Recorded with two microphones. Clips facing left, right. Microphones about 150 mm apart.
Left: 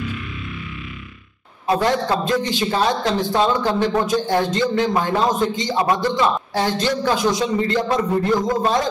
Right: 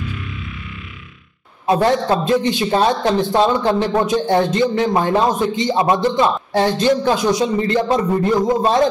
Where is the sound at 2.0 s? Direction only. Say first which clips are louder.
Right 4 dB; 20° right (ahead or behind).